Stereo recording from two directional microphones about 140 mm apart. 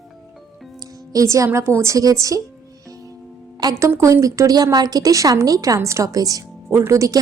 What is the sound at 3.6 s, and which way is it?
A woman's voice, 20° right (ahead or behind).